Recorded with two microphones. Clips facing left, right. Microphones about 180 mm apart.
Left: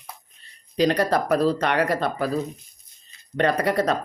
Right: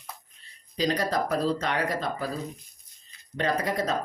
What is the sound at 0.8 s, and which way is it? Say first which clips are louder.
Speech: left 6 dB; 65° left (ahead or behind).